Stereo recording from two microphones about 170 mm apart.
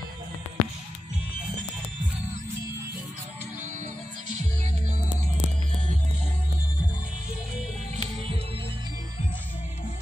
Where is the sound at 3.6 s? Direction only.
45° right (ahead or behind).